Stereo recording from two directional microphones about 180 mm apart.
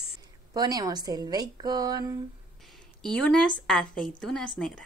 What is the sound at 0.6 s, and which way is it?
A woman's voice, 20° right (ahead or behind).